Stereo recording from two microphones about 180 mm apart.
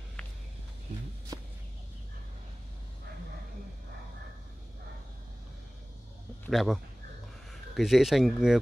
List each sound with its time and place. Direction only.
1.3 s fowl: 20° right (ahead or behind)
6.5 s speech: centre (ahead or behind)